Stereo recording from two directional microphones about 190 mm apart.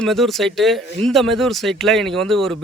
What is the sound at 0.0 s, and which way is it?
Speech, centre (ahead or behind).